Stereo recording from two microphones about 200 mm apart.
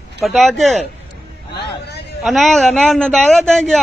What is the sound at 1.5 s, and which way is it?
Speech, 55° left (ahead or behind).